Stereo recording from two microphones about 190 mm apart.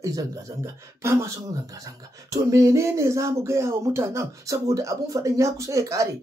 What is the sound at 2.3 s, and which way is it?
Speech, 15° right (ahead or behind).